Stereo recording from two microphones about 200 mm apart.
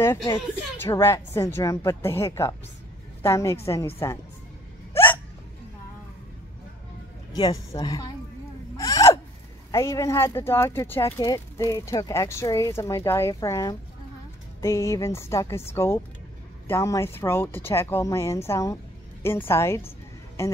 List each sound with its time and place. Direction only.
0.7 s a woman's voice: 15° left (ahead or behind)
4.9 s hiccup: 10° left (ahead or behind)
7.3 s a man's voice: 20° left (ahead or behind)
8.7 s a sound: 15° left (ahead or behind)
9.7 s speech: 15° left (ahead or behind)